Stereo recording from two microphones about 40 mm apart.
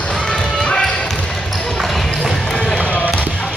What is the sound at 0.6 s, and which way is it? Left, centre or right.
Music, left.